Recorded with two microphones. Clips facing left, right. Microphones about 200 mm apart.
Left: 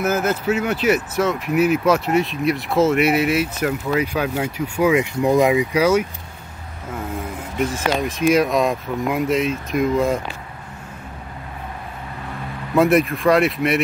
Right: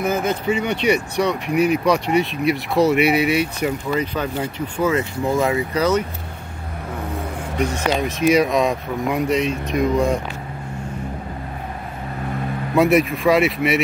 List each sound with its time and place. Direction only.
0.0 s speech: 5° left (ahead or behind)
7.5 s speech: centre (ahead or behind)
12.7 s speech: centre (ahead or behind)